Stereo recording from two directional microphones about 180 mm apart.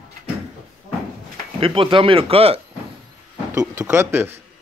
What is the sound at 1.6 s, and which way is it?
Speech, 30° right (ahead or behind).